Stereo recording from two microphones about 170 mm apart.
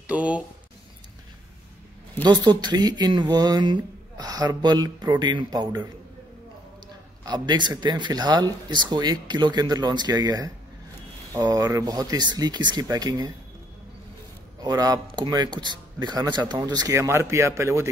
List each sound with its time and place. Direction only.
0.0 s speech: 10° right (ahead or behind)
2.2 s speech: 25° right (ahead or behind)
7.2 s speech: 25° right (ahead or behind)
14.6 s speech: 20° right (ahead or behind)